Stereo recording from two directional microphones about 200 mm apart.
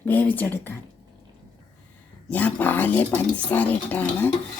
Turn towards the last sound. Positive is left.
turn(degrees=10)  # may be behind; listen again after turning